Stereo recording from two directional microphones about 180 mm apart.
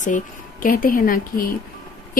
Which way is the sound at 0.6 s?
50° left (ahead or behind).